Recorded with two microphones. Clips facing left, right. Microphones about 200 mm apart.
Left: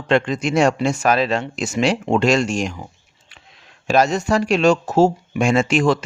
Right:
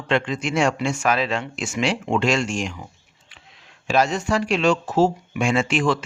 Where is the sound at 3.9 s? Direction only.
40° left (ahead or behind).